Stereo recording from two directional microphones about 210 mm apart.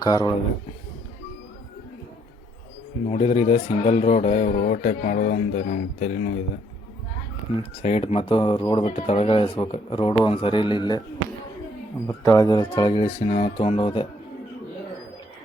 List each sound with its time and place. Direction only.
0.0 s speech: 20° left (ahead or behind)
3.1 s speech: 30° left (ahead or behind)
7.8 s speech: 30° left (ahead or behind)
12.0 s speech: 15° left (ahead or behind)